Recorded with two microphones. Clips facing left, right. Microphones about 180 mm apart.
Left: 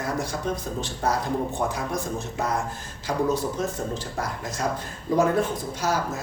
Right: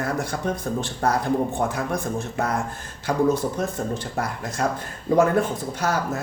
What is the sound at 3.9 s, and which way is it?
Speech, 60° right (ahead or behind).